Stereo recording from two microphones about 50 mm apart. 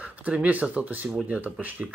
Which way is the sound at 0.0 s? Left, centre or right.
Right.